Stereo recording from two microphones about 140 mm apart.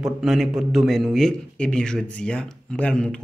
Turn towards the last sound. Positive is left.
turn(degrees=5)  # may be behind; listen again after turning